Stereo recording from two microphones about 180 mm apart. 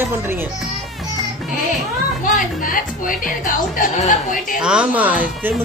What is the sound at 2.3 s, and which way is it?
A woman's voice, 50° left (ahead or behind).